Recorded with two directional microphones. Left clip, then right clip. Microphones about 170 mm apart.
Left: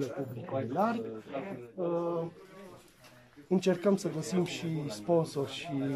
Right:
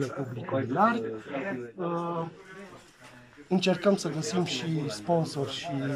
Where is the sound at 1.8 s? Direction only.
15° left (ahead or behind).